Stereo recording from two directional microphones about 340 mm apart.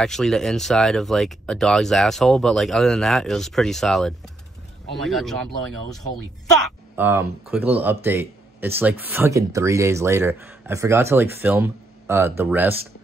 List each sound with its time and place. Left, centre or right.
0.0 s speech: centre
7.0 s speech: centre